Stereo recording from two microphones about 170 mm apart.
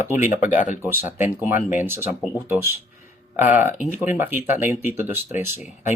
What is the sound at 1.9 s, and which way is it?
Speech, 10° right (ahead or behind).